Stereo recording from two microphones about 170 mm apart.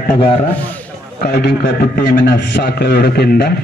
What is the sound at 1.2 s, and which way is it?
A man's voice, 70° left (ahead or behind).